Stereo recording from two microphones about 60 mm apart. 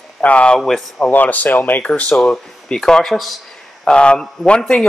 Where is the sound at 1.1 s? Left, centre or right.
Left; by 3.3 s centre.